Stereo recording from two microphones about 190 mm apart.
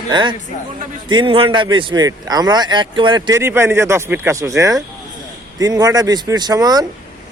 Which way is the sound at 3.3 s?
15° right (ahead or behind).